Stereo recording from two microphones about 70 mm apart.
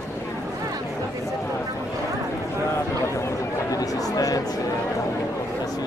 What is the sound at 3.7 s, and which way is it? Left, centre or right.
Chatter, left.